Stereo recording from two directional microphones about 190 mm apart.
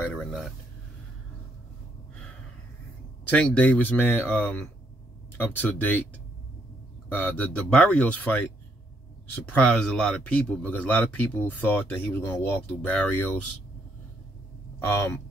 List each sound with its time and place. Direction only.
0.1 s speech: centre (ahead or behind)
3.3 s speech: 5° left (ahead or behind)
7.1 s speech: 10° left (ahead or behind)
14.8 s speech: 15° left (ahead or behind)